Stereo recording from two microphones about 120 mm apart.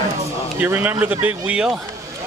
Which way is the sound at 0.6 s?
15° right (ahead or behind).